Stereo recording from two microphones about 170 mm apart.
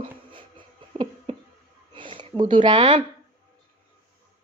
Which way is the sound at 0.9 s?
30° right (ahead or behind).